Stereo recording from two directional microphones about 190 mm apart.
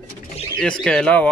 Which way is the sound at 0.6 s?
5° left (ahead or behind).